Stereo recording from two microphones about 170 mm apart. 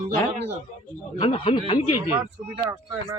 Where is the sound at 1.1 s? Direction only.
30° left (ahead or behind).